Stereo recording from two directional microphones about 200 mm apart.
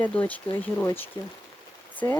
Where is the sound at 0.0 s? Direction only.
10° left (ahead or behind).